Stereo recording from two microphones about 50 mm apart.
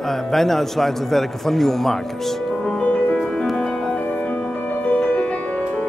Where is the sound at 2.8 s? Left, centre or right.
Left.